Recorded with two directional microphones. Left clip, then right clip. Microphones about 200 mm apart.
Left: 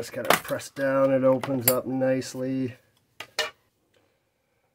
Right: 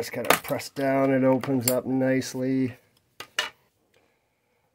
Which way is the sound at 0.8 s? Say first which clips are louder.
Left 1 dB; 35° right (ahead or behind).